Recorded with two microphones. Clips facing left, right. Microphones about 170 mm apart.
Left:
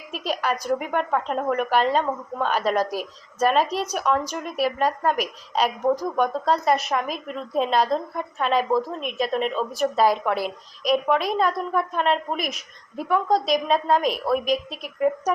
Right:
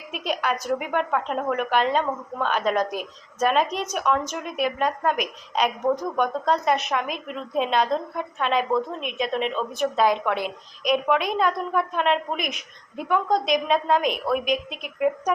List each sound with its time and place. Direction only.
0.1 s a woman's voice: centre (ahead or behind)
14.5 s a woman's voice: 35° left (ahead or behind)